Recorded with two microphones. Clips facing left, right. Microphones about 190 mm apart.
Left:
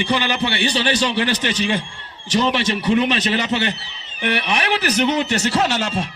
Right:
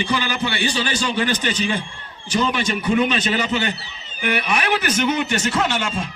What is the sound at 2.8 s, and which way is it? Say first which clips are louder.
A man's voice: even; 35° left (ahead or behind).